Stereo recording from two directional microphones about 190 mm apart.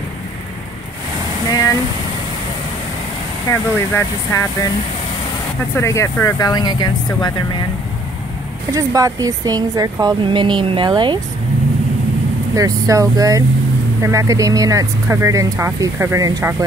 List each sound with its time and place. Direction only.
1.5 s vehicle: 15° left (ahead or behind)
3.4 s speech: 15° left (ahead or behind)
5.8 s speech: 15° left (ahead or behind)
8.7 s speech: 20° right (ahead or behind)
12.5 s speech: 15° right (ahead or behind)